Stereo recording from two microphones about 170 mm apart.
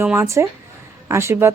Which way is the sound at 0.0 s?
15° right (ahead or behind).